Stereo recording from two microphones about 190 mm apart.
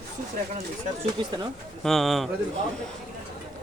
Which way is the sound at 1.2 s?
25° right (ahead or behind).